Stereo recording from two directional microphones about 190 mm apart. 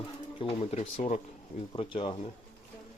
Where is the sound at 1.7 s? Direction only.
25° left (ahead or behind).